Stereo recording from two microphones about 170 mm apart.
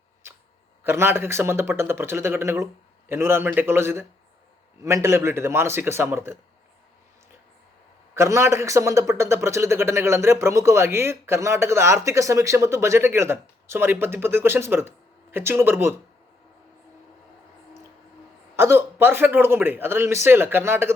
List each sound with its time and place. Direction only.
0.9 s a man's voice: 15° right (ahead or behind)
8.1 s a man's voice: 15° right (ahead or behind)
18.5 s a man's voice: 15° right (ahead or behind)